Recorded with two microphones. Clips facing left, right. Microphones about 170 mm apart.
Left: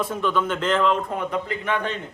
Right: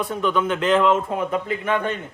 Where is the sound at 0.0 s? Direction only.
Centre (ahead or behind).